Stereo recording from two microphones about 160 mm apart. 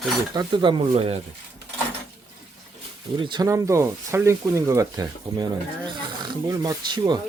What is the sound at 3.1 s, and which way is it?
Speech, 30° right (ahead or behind).